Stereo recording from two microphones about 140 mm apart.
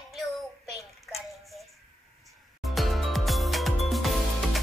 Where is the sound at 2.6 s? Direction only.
Centre (ahead or behind).